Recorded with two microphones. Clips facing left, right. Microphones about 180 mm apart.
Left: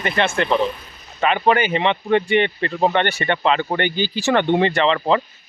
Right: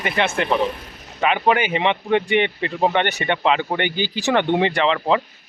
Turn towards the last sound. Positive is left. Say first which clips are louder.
# left 1 dB
turn(degrees=-10)  # may be behind; listen again after turning